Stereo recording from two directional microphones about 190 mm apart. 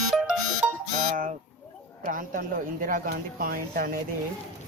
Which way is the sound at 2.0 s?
45° right (ahead or behind).